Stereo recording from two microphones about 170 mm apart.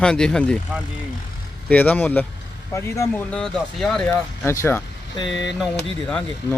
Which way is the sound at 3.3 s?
Centre (ahead or behind).